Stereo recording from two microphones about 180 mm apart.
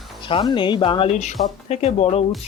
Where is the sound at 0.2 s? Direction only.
30° left (ahead or behind).